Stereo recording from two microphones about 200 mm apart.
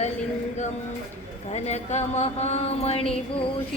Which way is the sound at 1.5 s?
35° left (ahead or behind).